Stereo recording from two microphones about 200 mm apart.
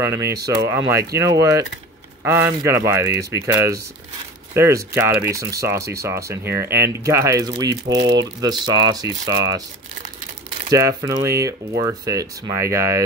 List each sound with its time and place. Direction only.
0.0 s speech: 15° right (ahead or behind)
10.7 s speech: 15° right (ahead or behind)